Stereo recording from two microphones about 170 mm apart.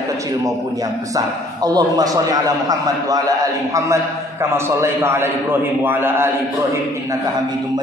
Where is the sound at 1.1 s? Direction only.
20° right (ahead or behind).